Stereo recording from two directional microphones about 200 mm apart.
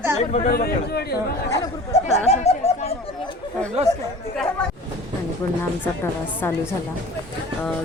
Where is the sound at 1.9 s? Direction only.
35° left (ahead or behind).